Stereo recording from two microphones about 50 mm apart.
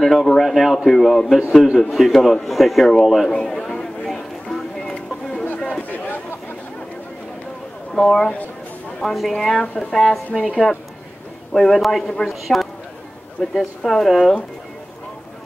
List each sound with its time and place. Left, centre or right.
0.0 s speech: centre
3.3 s a sound: centre
5.7 s a sound: left
7.9 s speech: centre
9.6 s a woman's voice: left
11.5 s speech: centre